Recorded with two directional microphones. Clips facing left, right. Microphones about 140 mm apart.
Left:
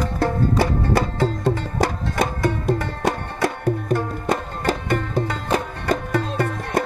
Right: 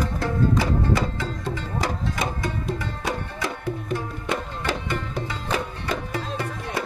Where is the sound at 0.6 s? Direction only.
60° left (ahead or behind).